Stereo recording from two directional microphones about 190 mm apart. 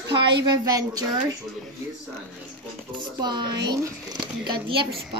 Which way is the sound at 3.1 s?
25° right (ahead or behind).